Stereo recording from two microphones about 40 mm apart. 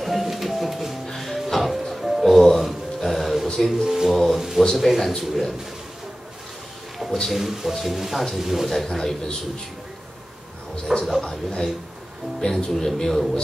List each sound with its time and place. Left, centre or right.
0.0 s music: centre
3.8 s speech: centre
7.2 s speech: centre
8.7 s a man's voice: centre
10.9 s speech: centre
11.2 s a man's voice: centre